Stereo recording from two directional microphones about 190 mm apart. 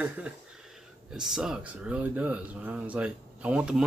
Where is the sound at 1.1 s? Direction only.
Centre (ahead or behind).